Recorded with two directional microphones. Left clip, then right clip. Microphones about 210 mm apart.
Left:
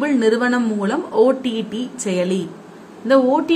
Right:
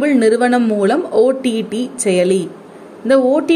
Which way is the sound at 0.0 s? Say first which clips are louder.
Right 4 dB; 20° right (ahead or behind).